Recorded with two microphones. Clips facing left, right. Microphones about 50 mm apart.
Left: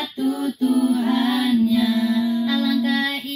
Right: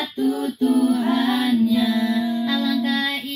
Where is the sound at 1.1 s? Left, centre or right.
Right.